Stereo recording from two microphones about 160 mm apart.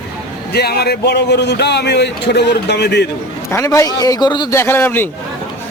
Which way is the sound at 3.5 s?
15° left (ahead or behind).